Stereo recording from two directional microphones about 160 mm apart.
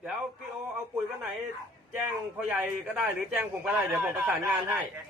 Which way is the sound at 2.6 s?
5° right (ahead or behind).